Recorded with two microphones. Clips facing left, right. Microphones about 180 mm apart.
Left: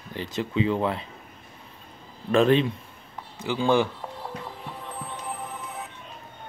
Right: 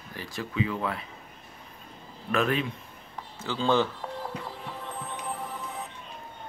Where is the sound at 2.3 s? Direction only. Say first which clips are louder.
Left 7 dB; 30° left (ahead or behind).